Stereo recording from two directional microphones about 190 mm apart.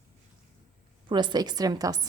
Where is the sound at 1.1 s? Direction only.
25° right (ahead or behind).